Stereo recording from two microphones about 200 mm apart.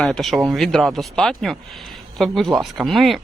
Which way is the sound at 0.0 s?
Centre (ahead or behind).